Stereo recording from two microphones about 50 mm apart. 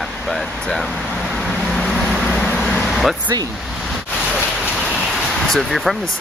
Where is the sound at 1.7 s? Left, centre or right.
Centre.